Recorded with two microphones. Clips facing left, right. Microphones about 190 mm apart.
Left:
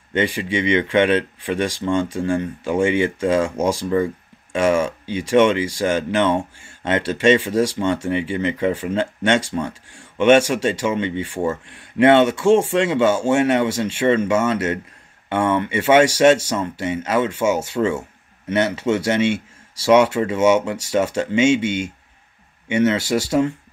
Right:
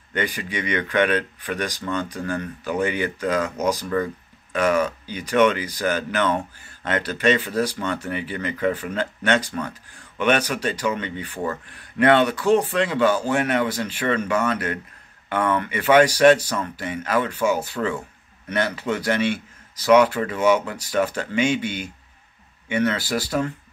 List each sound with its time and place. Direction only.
0.1 s speech: 25° left (ahead or behind)